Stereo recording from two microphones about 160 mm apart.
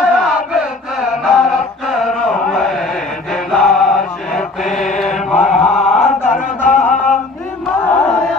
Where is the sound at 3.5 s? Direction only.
Centre (ahead or behind).